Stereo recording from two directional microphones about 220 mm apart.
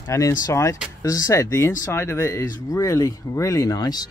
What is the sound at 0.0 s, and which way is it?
Speech, 15° left (ahead or behind).